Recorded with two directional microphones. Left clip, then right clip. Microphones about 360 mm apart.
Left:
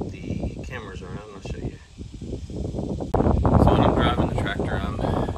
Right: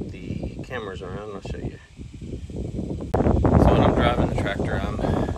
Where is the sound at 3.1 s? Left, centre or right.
Centre.